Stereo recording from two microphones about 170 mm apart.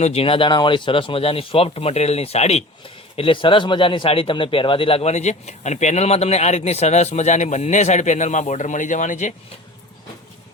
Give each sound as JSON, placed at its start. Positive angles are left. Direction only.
{"t": 0.0, "sound": "speech", "side_deg": 35}